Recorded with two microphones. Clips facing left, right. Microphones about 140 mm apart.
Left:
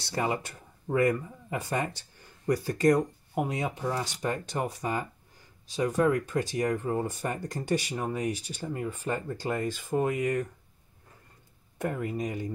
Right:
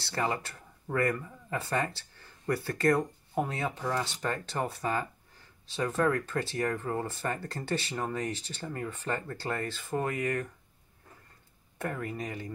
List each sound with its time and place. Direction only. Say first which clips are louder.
0.0 s speech: left 2 dB; 15° left (ahead or behind)
11.8 s speech: left 4 dB; 20° left (ahead or behind)